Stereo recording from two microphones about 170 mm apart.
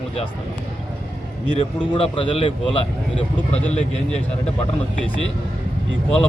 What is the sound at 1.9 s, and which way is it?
Speech, 30° left (ahead or behind).